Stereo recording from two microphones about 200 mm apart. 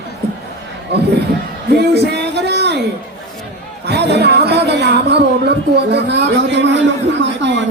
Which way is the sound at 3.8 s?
55° right (ahead or behind).